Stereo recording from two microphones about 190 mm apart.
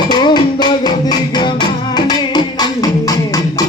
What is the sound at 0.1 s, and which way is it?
Music, 20° left (ahead or behind).